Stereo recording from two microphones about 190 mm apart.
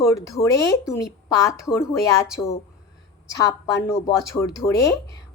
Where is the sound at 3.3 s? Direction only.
15° left (ahead or behind).